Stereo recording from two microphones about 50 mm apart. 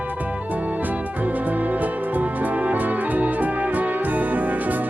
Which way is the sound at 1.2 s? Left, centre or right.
Right.